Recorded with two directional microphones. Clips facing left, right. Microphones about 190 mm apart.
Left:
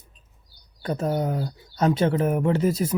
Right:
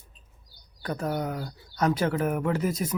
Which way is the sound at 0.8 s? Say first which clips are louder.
Left 4 dB; 25° left (ahead or behind).